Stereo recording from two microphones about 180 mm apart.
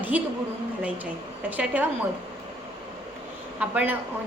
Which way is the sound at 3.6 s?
10° right (ahead or behind).